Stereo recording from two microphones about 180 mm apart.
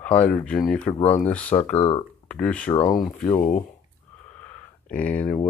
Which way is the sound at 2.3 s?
5° left (ahead or behind).